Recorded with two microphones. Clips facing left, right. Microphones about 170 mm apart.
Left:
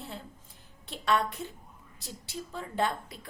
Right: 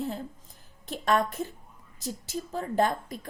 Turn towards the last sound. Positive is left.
turn(degrees=-45)  # may be behind; listen again after turning